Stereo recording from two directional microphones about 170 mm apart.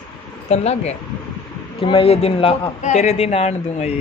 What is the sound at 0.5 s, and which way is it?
A man's voice, 40° left (ahead or behind).